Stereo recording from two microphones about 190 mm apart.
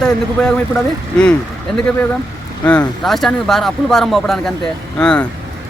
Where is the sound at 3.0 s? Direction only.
Centre (ahead or behind).